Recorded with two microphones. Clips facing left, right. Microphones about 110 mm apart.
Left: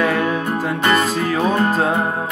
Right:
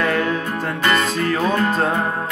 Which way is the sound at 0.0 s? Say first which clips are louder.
Left 2 dB; 5° left (ahead or behind).